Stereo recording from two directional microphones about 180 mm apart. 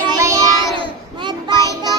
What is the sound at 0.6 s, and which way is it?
Child singing, 20° left (ahead or behind).